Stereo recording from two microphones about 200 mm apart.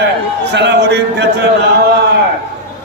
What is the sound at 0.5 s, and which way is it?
Speech, 60° right (ahead or behind).